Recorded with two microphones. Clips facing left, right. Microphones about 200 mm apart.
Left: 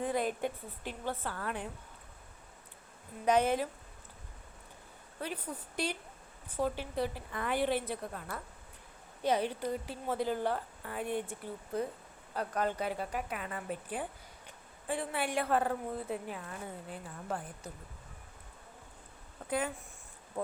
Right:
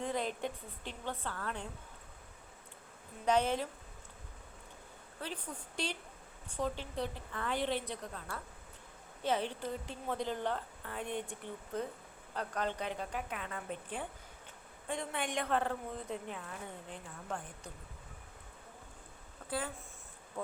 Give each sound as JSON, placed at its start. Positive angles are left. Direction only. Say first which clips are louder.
{"t": 0.0, "sound": "a woman's voice", "louder": "left 4 dB", "side_deg": 10}
{"t": 3.2, "sound": "a woman's voice", "louder": "left 3 dB", "side_deg": 10}
{"t": 5.2, "sound": "a woman's voice", "louder": "left 4 dB", "side_deg": 10}
{"t": 19.5, "sound": "speech", "louder": "left 5 dB", "side_deg": 20}
{"t": 20.4, "sound": "speech", "louder": "left 4 dB", "side_deg": 35}